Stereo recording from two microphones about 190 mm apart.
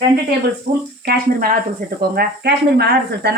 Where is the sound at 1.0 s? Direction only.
50° right (ahead or behind).